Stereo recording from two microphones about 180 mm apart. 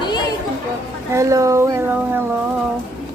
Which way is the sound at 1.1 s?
15° right (ahead or behind).